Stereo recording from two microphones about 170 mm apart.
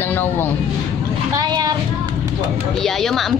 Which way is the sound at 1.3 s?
25° right (ahead or behind).